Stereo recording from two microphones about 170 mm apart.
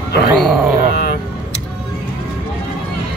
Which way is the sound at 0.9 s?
60° left (ahead or behind).